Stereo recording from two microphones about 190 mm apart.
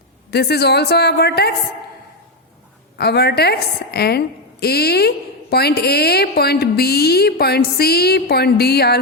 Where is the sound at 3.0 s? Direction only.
60° left (ahead or behind).